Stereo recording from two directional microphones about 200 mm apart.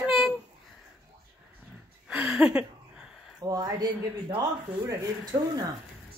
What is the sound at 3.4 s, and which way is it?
Speech, 20° right (ahead or behind).